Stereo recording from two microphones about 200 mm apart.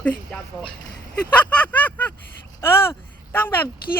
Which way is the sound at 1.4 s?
5° left (ahead or behind).